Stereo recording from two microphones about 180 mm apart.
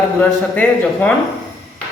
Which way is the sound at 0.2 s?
10° left (ahead or behind).